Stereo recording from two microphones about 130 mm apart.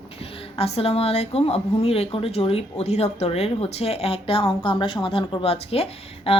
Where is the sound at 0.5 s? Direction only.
50° left (ahead or behind).